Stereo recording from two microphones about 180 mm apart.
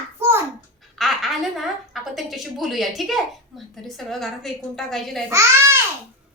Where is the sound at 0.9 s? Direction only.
Centre (ahead or behind).